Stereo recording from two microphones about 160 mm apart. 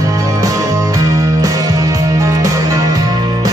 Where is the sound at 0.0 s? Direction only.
20° right (ahead or behind).